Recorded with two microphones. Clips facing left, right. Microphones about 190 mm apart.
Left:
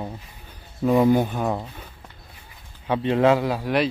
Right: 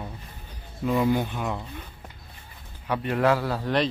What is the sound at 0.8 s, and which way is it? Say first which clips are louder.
Speech: left 6 dB; 50° left (ahead or behind).